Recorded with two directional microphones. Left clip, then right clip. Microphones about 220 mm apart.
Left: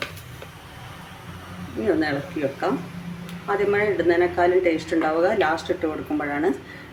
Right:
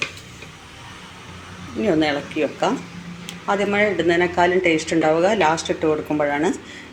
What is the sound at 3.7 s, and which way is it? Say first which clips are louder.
Speech: right 3 dB; 20° right (ahead or behind).